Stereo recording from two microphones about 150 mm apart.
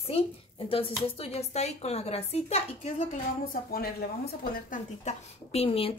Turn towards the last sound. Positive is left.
turn(degrees=40)  # may be behind; listen again after turning